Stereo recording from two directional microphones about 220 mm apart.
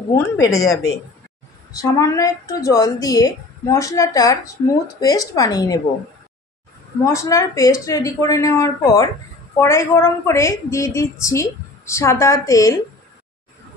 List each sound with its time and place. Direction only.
0.1 s a woman's voice: 10° left (ahead or behind)
1.8 s a woman's voice: 15° left (ahead or behind)
7.1 s a woman's voice: 15° left (ahead or behind)